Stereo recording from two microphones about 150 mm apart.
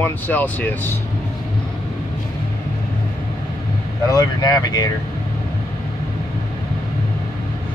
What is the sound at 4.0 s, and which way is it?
Speech, 25° left (ahead or behind).